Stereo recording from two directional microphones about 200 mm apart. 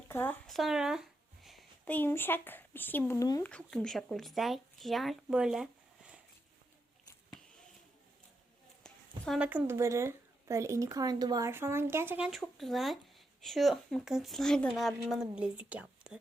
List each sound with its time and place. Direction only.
0.1 s speech: 10° left (ahead or behind)
3.5 s speech: centre (ahead or behind)
8.8 s a sound: 5° left (ahead or behind)
9.4 s speech: 10° right (ahead or behind)